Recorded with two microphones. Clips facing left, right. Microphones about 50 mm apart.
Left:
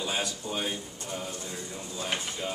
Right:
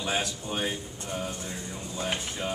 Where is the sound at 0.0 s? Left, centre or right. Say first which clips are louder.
Right 2 dB; right.